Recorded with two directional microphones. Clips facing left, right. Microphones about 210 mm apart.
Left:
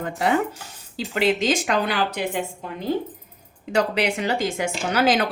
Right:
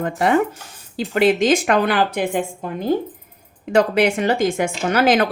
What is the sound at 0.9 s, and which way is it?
A woman's voice, 50° right (ahead or behind).